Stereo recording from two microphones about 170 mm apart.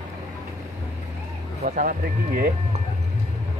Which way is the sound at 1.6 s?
55° right (ahead or behind).